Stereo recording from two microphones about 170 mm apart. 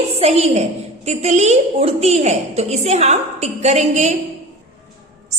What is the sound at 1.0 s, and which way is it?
A woman's voice, 40° right (ahead or behind).